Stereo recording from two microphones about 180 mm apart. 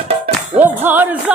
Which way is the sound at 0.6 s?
10° right (ahead or behind).